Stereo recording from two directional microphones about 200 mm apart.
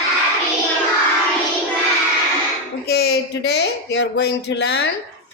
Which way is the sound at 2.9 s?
55° left (ahead or behind).